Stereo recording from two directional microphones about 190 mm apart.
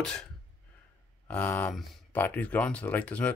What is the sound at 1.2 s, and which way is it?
Speech, 10° left (ahead or behind).